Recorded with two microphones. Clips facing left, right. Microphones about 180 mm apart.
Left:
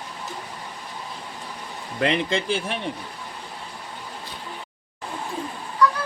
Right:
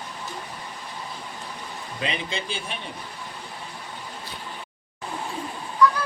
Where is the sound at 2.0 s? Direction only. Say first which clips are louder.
Left 8 dB; 70° left (ahead or behind).